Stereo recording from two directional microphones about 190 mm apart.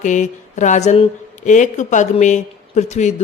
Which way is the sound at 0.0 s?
40° left (ahead or behind).